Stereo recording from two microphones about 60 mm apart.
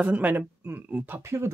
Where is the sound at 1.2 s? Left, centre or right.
Right.